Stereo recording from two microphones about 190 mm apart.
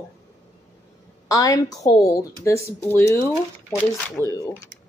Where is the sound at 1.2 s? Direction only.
20° left (ahead or behind).